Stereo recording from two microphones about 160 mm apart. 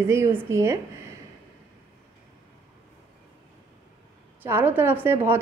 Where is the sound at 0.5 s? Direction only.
20° right (ahead or behind).